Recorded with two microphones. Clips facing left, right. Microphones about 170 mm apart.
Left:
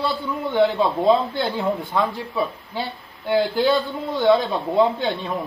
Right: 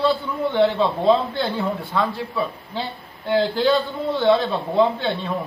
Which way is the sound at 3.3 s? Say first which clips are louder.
Even; 10° left (ahead or behind).